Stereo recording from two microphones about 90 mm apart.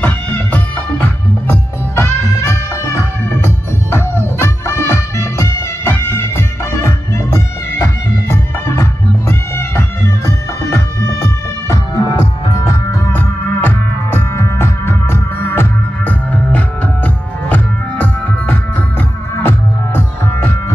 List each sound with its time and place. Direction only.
0.0 s music: 20° left (ahead or behind); by 12.3 s 45° left (ahead or behind)
13.1 s music: 15° left (ahead or behind)
14.3 s music: 30° left (ahead or behind)